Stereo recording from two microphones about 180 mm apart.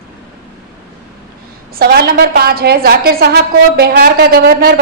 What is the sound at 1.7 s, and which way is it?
A woman's voice, 60° right (ahead or behind).